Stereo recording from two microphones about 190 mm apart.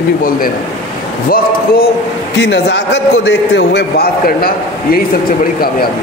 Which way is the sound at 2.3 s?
65° left (ahead or behind).